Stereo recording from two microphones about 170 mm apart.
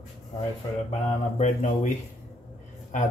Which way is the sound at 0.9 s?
45° left (ahead or behind).